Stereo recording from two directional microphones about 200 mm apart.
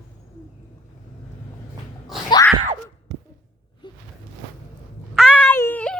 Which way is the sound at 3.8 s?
25° left (ahead or behind).